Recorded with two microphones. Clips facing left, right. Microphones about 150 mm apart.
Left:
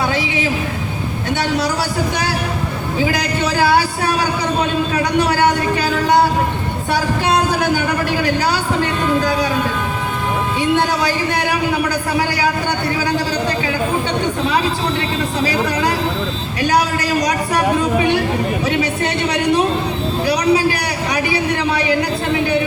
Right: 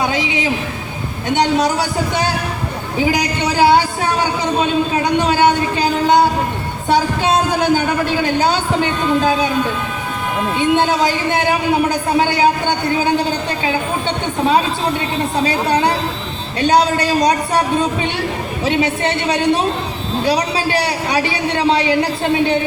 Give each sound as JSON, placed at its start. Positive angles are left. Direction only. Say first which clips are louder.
{"t": 0.1, "sound": "a sound", "louder": "even", "side_deg": -20}
{"t": 1.4, "sound": "a man's voice", "louder": "right 5 dB", "side_deg": -20}
{"t": 3.0, "sound": "a man's voice", "louder": "right 2 dB", "side_deg": -15}
{"t": 5.1, "sound": "a sound", "louder": "right 2 dB", "side_deg": -20}
{"t": 10.6, "sound": "a man's voice", "louder": "right 3 dB", "side_deg": -20}
{"t": 15.4, "sound": "a man's voice", "louder": "right 2 dB", "side_deg": -25}
{"t": 18.6, "sound": "a man's voice", "louder": "right 1 dB", "side_deg": -25}